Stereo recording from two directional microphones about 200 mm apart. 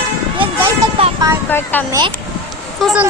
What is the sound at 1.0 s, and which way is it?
Music, 25° right (ahead or behind).